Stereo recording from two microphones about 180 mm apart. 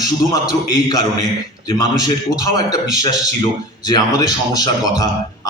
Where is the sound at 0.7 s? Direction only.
20° left (ahead or behind).